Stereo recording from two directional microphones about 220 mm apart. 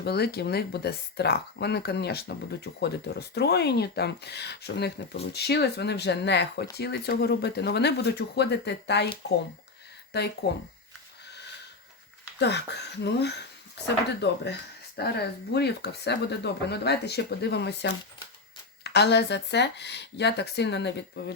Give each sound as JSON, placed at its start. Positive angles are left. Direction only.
{"t": 0.0, "sound": "speech", "side_deg": 45}
{"t": 10.1, "sound": "speech", "side_deg": 50}
{"t": 12.4, "sound": "speech", "side_deg": 50}
{"t": 18.8, "sound": "speech", "side_deg": 50}